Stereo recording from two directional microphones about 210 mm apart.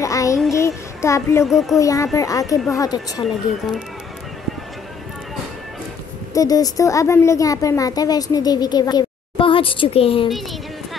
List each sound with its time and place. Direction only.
0.0 s child singing: 15° left (ahead or behind)
1.4 s speech: centre (ahead or behind)
1.8 s a woman's voice: 15° left (ahead or behind)
6.3 s a woman's voice: 15° left (ahead or behind)